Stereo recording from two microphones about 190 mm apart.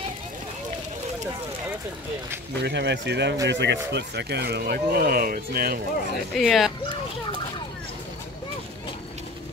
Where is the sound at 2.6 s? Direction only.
65° right (ahead or behind).